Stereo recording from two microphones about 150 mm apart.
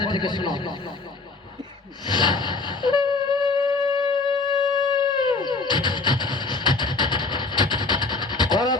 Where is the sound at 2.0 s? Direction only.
30° left (ahead or behind).